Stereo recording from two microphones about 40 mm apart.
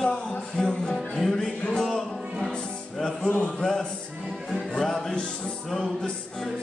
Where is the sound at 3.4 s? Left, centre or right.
Centre.